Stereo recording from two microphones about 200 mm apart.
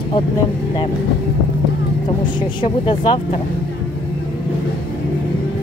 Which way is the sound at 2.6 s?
25° left (ahead or behind).